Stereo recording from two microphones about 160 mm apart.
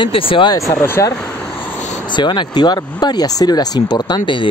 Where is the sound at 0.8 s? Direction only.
15° left (ahead or behind).